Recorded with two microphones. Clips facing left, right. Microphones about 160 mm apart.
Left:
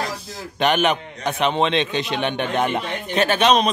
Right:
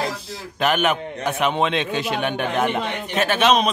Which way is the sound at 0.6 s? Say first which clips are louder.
Left 1 dB; 5° right (ahead or behind).